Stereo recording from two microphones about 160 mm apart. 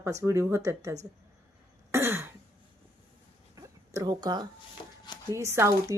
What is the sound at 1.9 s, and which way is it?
Throat clearing, 15° right (ahead or behind).